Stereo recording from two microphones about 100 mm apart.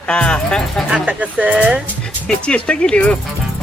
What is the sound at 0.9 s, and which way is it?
Speech, 10° right (ahead or behind).